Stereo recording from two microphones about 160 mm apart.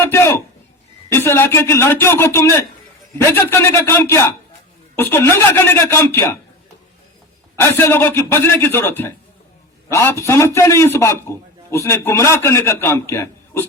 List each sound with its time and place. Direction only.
0.0 s a sound: 15° left (ahead or behind)
1.1 s a man's voice: 15° left (ahead or behind)
7.6 s a man's voice: 15° left (ahead or behind)